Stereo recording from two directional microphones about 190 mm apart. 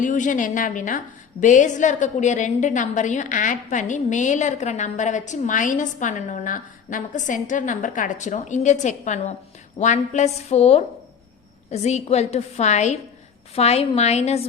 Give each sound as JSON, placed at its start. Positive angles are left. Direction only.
{"t": 0.0, "sound": "a woman's voice", "side_deg": 40}